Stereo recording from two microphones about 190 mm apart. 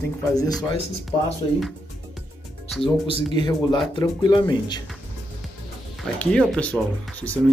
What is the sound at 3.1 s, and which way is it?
Speech, 30° right (ahead or behind).